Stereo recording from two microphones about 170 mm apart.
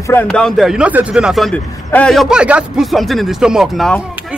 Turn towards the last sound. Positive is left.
turn(degrees=5)  # may be behind; listen again after turning